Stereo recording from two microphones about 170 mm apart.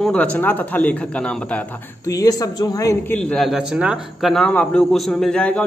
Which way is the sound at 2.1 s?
20° left (ahead or behind).